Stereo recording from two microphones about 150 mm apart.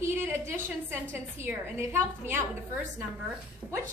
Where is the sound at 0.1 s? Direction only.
15° right (ahead or behind).